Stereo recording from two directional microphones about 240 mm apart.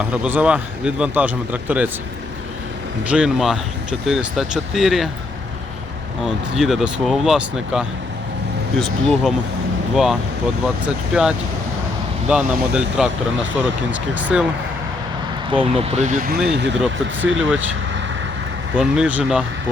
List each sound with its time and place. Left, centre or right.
0.0 s speech: centre
3.1 s speech: centre
6.2 s speech: centre
15.7 s speech: right
16.5 s speech: right
17.2 s speech: centre
18.8 s speech: centre